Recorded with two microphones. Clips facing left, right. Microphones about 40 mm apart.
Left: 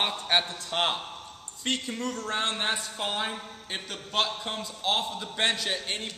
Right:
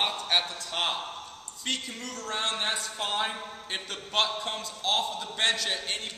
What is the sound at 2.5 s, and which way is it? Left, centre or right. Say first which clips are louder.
Speech: left 1 dB; centre.